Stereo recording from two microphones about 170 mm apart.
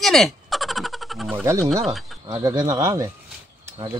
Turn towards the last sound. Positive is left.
turn(degrees=-20)  # may be behind; listen again after turning